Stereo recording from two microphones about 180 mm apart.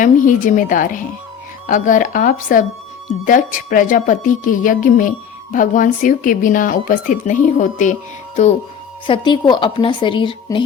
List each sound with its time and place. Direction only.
0.0 s a woman's voice: 45° left (ahead or behind)
9.0 s a woman's voice: 25° left (ahead or behind)